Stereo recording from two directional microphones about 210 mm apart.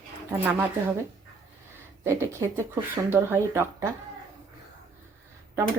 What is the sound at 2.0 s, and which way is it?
Speech, 15° right (ahead or behind).